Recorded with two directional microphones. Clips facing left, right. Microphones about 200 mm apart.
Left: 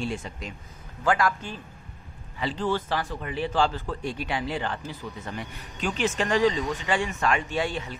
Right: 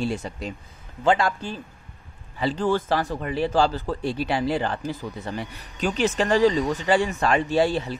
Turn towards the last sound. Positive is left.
turn(degrees=-35)  # may be behind; listen again after turning